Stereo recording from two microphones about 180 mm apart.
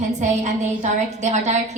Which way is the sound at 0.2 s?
40° right (ahead or behind).